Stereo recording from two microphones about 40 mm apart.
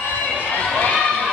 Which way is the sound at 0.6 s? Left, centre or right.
Left.